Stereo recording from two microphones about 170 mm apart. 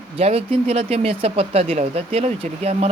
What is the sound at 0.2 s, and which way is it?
Speech, 35° right (ahead or behind).